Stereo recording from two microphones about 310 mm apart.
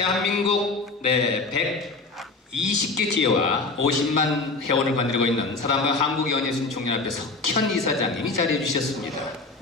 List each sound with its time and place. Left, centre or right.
0.0 s a man's voice: right